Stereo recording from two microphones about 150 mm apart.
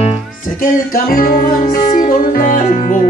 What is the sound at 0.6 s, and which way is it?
Music, 75° left (ahead or behind).